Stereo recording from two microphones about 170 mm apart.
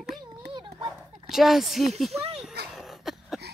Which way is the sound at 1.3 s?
Centre (ahead or behind).